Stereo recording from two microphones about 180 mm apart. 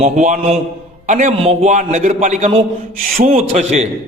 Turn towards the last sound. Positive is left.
turn(degrees=-40)  # may be behind; listen again after turning